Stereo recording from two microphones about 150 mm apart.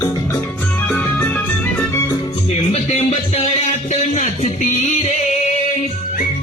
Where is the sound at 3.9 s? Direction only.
50° left (ahead or behind).